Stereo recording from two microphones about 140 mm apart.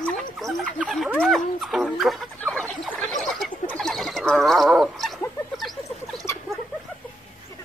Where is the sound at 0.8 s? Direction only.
Centre (ahead or behind).